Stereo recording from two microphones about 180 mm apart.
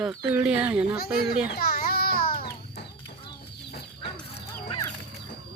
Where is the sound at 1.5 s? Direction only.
55° left (ahead or behind).